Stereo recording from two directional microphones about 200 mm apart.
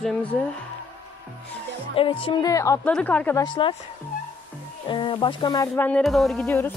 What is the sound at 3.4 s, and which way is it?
Speech, 25° left (ahead or behind).